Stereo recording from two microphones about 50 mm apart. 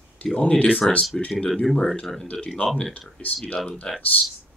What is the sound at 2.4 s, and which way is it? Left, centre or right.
Speech, left.